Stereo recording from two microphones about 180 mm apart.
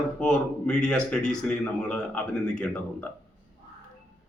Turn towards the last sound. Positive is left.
turn(degrees=5)  # may be behind; listen again after turning